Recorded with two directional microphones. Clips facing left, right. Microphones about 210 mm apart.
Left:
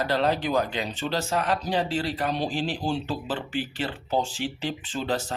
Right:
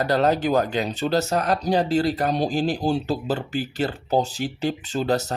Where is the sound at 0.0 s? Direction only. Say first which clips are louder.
Right 4 dB; 45° right (ahead or behind).